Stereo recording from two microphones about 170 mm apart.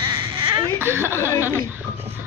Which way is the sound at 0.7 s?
15° right (ahead or behind).